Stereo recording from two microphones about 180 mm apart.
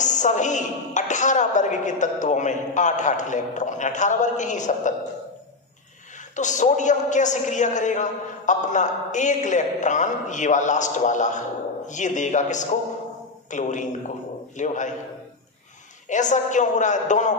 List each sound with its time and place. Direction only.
0.0 s a man's voice: 45° left (ahead or behind)
6.3 s a man's voice: 45° left (ahead or behind)
16.1 s a man's voice: 45° left (ahead or behind)